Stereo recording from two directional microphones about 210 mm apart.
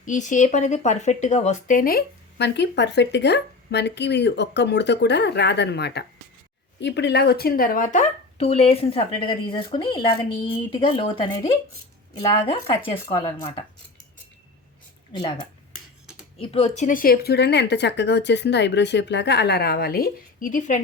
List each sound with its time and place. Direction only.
0.0 s speech: 35° left (ahead or behind)
15.1 s speech: 20° left (ahead or behind); by 20.8 s 35° left (ahead or behind)